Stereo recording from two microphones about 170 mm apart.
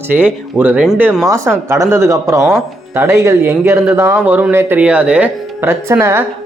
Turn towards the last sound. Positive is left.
turn(degrees=-15)  # may be behind; listen again after turning